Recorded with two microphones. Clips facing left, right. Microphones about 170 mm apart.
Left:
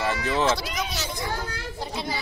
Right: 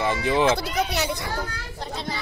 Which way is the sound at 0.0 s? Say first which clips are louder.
Right 3 dB; 20° right (ahead or behind).